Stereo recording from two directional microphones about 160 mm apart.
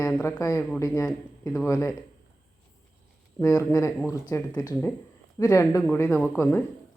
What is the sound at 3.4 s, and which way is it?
Speech, 20° left (ahead or behind).